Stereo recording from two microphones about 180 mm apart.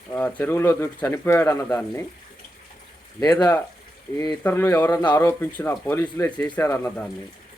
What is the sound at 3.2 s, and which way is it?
Speech, 20° left (ahead or behind).